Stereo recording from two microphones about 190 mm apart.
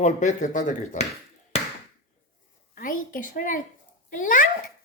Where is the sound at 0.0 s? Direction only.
40° left (ahead or behind).